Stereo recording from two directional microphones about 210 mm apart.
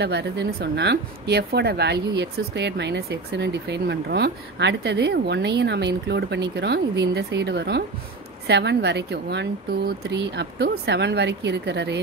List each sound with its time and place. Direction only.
0.0 s a woman's voice: 55° right (ahead or behind)